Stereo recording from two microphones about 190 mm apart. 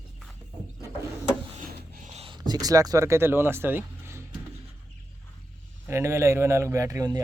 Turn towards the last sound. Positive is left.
turn(degrees=-15)  # may be behind; listen again after turning